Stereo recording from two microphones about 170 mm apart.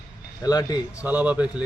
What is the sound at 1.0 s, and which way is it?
Speech, 10° right (ahead or behind).